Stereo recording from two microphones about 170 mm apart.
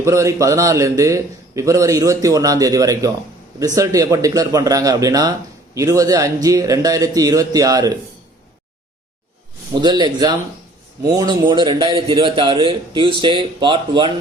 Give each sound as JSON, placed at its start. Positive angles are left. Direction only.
{"t": 0.0, "sound": "a man's voice", "side_deg": -15}
{"t": 9.8, "sound": "a man's voice", "side_deg": -25}